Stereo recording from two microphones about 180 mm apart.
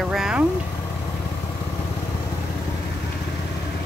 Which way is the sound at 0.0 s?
Centre (ahead or behind).